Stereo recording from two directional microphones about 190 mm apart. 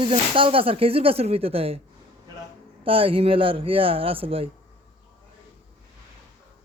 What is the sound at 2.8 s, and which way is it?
Speech, 30° right (ahead or behind).